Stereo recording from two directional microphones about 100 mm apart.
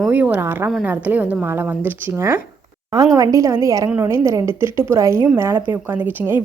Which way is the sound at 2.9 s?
35° right (ahead or behind).